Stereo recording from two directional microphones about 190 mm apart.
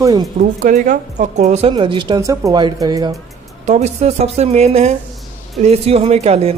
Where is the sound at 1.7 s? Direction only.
25° right (ahead or behind).